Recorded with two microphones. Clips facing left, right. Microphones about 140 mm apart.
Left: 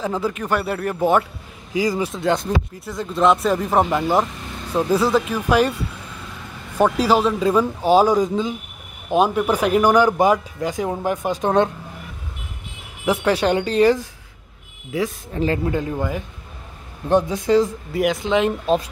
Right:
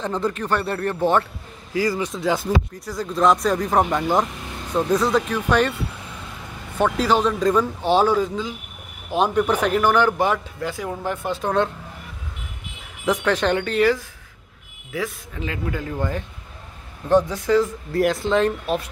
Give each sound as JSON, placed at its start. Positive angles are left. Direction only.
{"t": 0.0, "sound": "speech", "side_deg": 5}
{"t": 2.0, "sound": "speech", "side_deg": 0}
{"t": 6.8, "sound": "speech", "side_deg": 10}
{"t": 13.0, "sound": "speech", "side_deg": 10}
{"t": 13.7, "sound": "speech", "side_deg": 30}
{"t": 15.3, "sound": "speech", "side_deg": 35}
{"t": 16.0, "sound": "speech", "side_deg": 10}
{"t": 17.9, "sound": "speech", "side_deg": 0}